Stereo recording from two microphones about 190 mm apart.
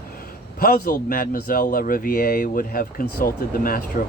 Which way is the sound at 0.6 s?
45° left (ahead or behind).